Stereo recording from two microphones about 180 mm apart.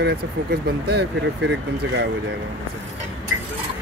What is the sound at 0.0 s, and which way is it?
Speech, 65° right (ahead or behind).